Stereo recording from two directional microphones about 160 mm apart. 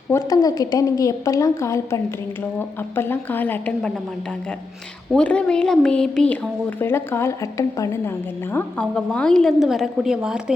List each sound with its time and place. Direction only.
0.1 s a woman's voice: 25° left (ahead or behind)
5.1 s speech: 5° left (ahead or behind)
8.5 s a woman's voice: 5° left (ahead or behind)